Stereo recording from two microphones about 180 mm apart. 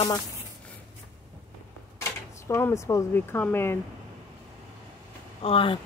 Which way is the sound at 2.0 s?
15° left (ahead or behind).